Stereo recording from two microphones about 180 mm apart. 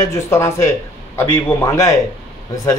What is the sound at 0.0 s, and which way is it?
Speech, 15° left (ahead or behind).